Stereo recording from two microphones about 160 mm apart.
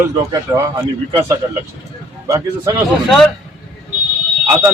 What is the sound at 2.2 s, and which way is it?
Speech, 20° right (ahead or behind).